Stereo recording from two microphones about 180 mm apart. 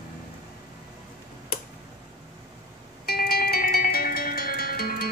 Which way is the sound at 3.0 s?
60° left (ahead or behind).